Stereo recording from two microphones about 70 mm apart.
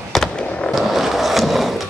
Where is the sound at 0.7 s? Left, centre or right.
Centre.